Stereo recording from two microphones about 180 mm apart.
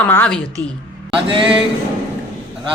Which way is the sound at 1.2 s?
30° right (ahead or behind).